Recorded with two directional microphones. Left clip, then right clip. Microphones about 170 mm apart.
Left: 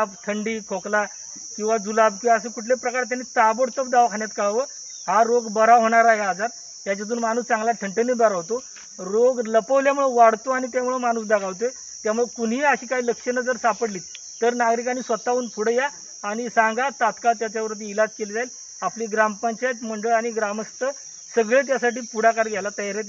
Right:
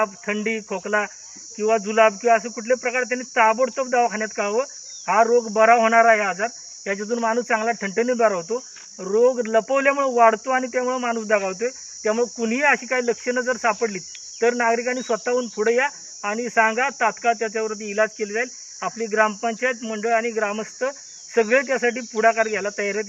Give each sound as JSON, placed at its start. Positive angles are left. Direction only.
{"t": 0.0, "sound": "speech", "side_deg": -15}